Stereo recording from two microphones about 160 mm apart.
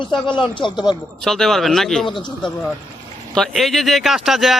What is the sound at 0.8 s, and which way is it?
Speech, centre (ahead or behind).